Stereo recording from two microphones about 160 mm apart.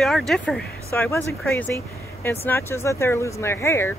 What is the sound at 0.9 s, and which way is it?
Speech, 15° left (ahead or behind).